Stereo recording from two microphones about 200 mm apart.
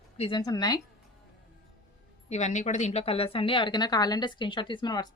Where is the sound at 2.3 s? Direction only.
35° left (ahead or behind); by 5.1 s 20° left (ahead or behind).